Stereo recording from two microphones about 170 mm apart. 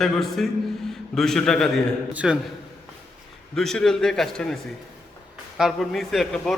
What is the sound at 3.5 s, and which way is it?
A man's voice, centre (ahead or behind).